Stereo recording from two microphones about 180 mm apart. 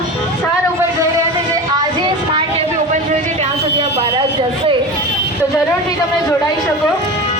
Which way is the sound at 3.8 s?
30° right (ahead or behind).